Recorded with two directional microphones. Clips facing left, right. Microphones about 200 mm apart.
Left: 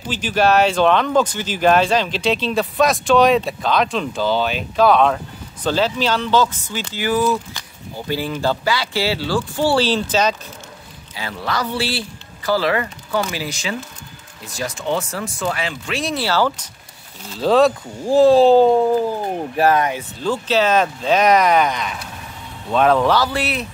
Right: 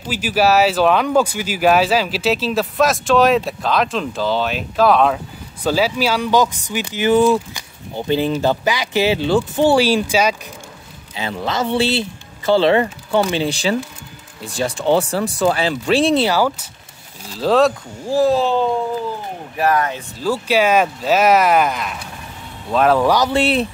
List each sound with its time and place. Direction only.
0.1 s speech: 5° right (ahead or behind)
11.1 s speech: 20° right (ahead or behind)
16.3 s speech: 10° right (ahead or behind)
17.3 s speech: centre (ahead or behind)
18.0 s speech: 20° left (ahead or behind)
18.3 s speech: 35° left (ahead or behind)
19.8 s speech: 10° left (ahead or behind)
20.2 s speech: 10° right (ahead or behind)
23.1 s speech: 20° right (ahead or behind)